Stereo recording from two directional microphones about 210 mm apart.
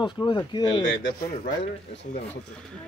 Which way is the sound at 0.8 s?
60° left (ahead or behind).